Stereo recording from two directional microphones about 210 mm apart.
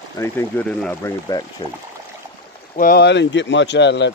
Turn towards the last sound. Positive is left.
turn(degrees=55)  # may be behind; listen again after turning